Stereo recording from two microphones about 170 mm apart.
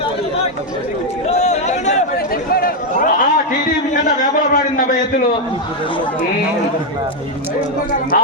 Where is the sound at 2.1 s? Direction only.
60° left (ahead or behind).